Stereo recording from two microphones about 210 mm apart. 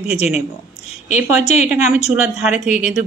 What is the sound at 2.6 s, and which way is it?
Speech, 35° left (ahead or behind).